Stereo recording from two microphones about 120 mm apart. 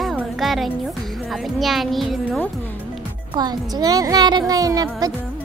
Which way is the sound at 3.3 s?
35° right (ahead or behind).